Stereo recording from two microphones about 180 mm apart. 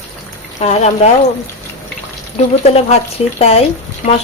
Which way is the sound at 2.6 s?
35° left (ahead or behind).